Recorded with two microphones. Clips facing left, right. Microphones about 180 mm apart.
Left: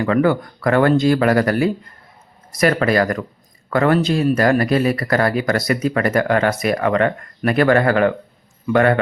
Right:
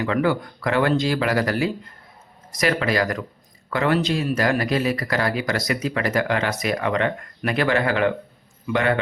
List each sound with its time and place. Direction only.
0.0 s speech: 50° left (ahead or behind)